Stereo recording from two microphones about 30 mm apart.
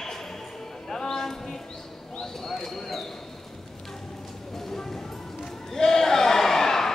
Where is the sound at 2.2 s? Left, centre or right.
Centre.